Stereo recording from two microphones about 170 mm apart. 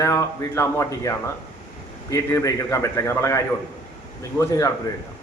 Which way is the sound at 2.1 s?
15° left (ahead or behind).